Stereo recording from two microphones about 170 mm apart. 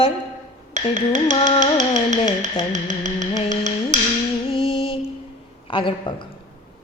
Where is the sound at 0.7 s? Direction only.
45° right (ahead or behind).